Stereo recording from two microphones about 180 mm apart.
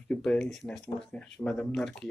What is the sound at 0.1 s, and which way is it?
Speech, 5° left (ahead or behind).